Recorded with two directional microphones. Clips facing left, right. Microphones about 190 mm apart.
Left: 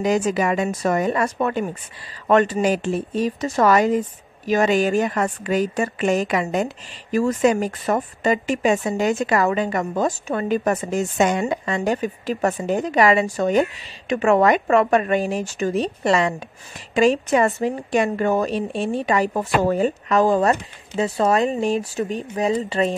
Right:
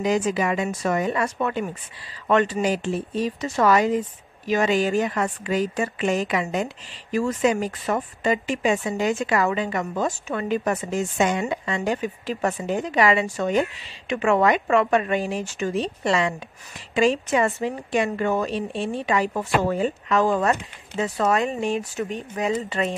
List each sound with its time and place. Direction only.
0.0 s speech: 45° left (ahead or behind)